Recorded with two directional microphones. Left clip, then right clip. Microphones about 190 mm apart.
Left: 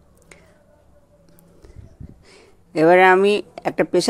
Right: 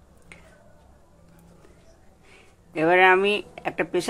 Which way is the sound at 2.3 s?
45° left (ahead or behind).